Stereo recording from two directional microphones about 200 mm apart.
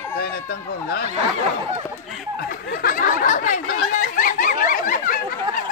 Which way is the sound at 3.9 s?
40° left (ahead or behind).